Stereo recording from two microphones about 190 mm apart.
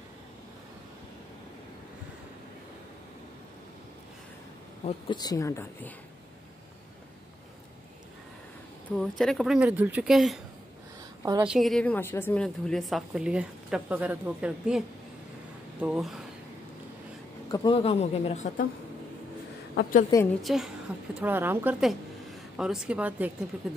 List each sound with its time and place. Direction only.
4.8 s speech: 25° left (ahead or behind)
8.9 s a woman's voice: centre (ahead or behind)
11.4 s a woman's voice: centre (ahead or behind)
15.8 s a woman's voice: centre (ahead or behind)
17.5 s speech: 25° left (ahead or behind)
19.7 s a woman's voice: 55° left (ahead or behind)
20.4 s a woman's voice: centre (ahead or behind)